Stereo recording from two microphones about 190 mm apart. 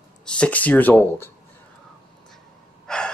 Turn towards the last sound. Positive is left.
turn(degrees=5)  # may be behind; listen again after turning